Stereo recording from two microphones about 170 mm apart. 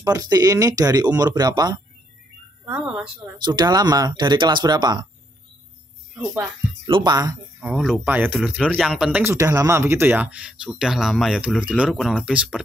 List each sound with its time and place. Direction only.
0.0 s speech: 20° right (ahead or behind)
2.6 s speech: 5° right (ahead or behind)
3.4 s speech: 25° right (ahead or behind)
6.1 s speech: 10° right (ahead or behind)
6.9 s speech: 25° right (ahead or behind)
7.6 s speech: centre (ahead or behind)
9.2 s speech: 15° right (ahead or behind)